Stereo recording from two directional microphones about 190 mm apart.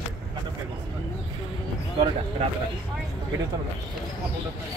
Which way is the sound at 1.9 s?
30° right (ahead or behind).